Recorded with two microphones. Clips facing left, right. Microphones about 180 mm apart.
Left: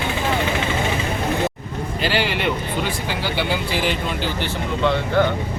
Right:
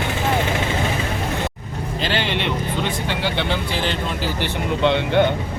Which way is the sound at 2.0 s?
10° left (ahead or behind).